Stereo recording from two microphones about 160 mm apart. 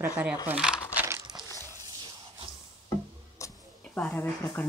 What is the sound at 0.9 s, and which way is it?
Crumpling, 15° right (ahead or behind).